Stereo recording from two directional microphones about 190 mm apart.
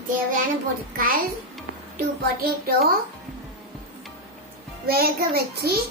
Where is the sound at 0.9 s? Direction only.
50° right (ahead or behind).